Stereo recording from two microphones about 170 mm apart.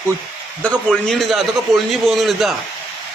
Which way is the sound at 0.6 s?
10° right (ahead or behind).